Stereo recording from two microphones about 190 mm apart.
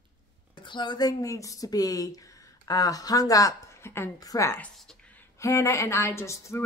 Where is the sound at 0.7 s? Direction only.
25° left (ahead or behind).